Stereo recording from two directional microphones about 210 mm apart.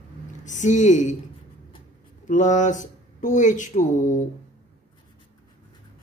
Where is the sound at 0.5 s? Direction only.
35° left (ahead or behind).